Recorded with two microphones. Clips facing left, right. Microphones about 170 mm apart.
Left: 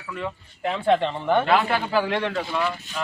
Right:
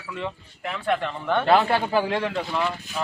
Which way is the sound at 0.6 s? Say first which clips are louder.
Left 5 dB; 25° left (ahead or behind).